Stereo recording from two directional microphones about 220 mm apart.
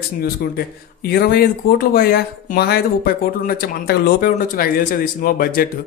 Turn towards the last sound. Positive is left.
turn(degrees=40)  # may be behind; listen again after turning